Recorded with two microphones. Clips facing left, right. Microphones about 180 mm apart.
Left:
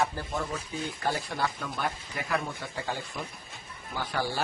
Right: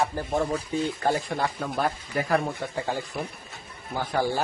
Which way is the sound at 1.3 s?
45° right (ahead or behind).